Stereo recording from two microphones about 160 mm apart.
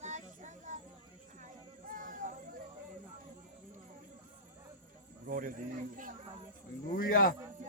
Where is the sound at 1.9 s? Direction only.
55° right (ahead or behind).